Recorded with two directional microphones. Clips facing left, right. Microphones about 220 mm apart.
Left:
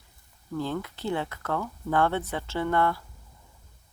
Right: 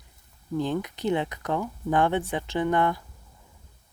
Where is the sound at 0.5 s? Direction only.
15° right (ahead or behind).